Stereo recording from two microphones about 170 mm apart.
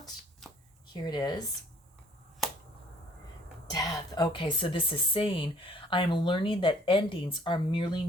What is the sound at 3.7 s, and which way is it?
A woman's voice, 25° left (ahead or behind).